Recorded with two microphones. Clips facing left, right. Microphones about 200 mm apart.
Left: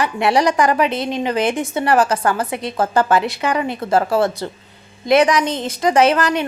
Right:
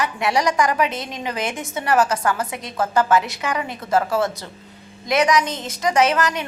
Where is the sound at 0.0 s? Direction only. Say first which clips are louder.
Left 4 dB; 30° left (ahead or behind).